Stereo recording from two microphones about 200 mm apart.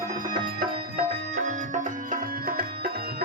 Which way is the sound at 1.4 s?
40° right (ahead or behind).